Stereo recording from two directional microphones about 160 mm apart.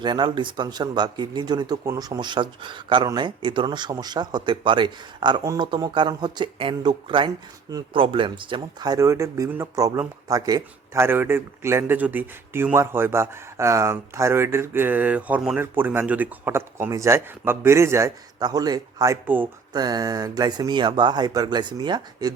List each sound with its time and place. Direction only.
0.0 s speech: 30° right (ahead or behind)